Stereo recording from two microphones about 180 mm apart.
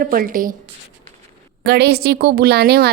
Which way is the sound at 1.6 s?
65° right (ahead or behind).